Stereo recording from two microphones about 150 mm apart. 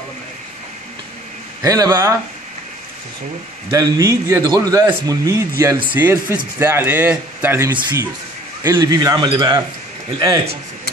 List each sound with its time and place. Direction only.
1.6 s speech: 25° right (ahead or behind)
3.7 s a man's voice: 25° right (ahead or behind)